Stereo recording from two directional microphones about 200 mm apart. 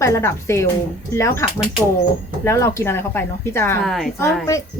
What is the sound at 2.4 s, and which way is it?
Speech, 15° left (ahead or behind).